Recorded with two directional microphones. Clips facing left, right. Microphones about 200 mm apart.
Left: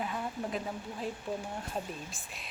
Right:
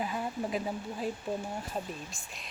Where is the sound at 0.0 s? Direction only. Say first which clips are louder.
Right 2 dB; 5° right (ahead or behind).